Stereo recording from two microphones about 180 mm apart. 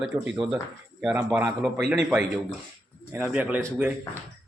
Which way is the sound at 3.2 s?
5° right (ahead or behind).